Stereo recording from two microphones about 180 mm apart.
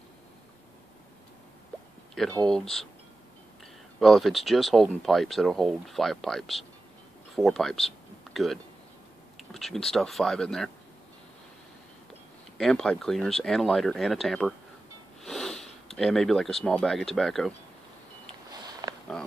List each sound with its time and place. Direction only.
2.4 s speech: 5° left (ahead or behind)
4.0 s speech: centre (ahead or behind)
12.5 s speech: 5° left (ahead or behind)
18.5 s a sound: 20° right (ahead or behind)